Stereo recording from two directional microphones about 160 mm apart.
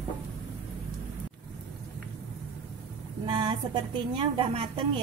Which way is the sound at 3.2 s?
30° right (ahead or behind).